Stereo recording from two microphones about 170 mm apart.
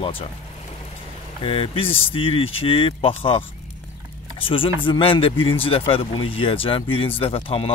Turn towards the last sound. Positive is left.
turn(degrees=35)  # may be behind; listen again after turning